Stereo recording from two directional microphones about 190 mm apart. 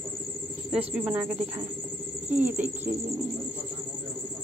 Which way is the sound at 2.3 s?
10° right (ahead or behind).